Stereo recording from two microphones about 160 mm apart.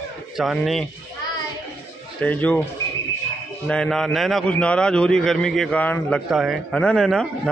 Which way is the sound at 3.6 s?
5° left (ahead or behind).